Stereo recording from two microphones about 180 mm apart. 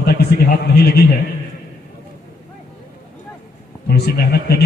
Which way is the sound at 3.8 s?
65° left (ahead or behind).